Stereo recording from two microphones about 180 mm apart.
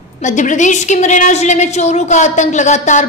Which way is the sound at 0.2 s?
40° left (ahead or behind).